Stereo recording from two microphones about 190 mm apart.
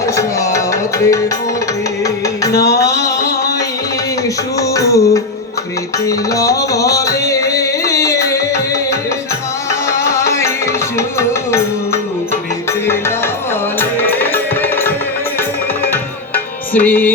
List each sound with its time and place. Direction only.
0.0 s tabla: 15° left (ahead or behind)
2.0 s music: 15° left (ahead or behind)
2.6 s a sound: 15° left (ahead or behind)
4.6 s music: 15° left (ahead or behind)
10.0 s music: 15° left (ahead or behind)
12.9 s music: 15° left (ahead or behind)
15.8 s tabla: 10° left (ahead or behind)